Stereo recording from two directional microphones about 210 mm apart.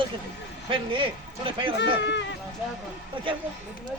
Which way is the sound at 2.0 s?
55° left (ahead or behind).